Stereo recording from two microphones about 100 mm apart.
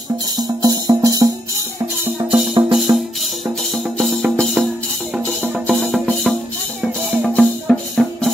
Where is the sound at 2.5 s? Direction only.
50° right (ahead or behind).